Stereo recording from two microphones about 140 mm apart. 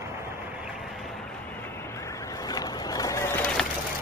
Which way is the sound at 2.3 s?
25° left (ahead or behind).